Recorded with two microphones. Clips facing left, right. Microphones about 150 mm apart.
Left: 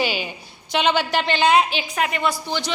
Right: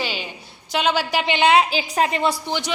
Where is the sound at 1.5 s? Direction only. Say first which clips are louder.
Right 1 dB; 30° right (ahead or behind).